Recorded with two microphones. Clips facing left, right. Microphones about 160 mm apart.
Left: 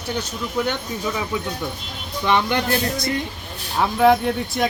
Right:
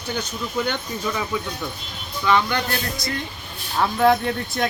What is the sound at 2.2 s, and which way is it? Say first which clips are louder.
Speech: left 1 dB; 20° left (ahead or behind).